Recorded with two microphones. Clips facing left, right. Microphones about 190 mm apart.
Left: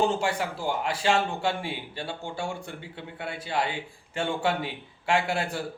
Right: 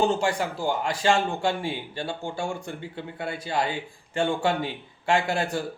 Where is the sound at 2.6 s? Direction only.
40° right (ahead or behind).